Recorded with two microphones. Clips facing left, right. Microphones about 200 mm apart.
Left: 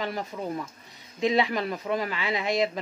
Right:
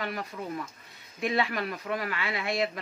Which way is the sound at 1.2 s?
20° left (ahead or behind).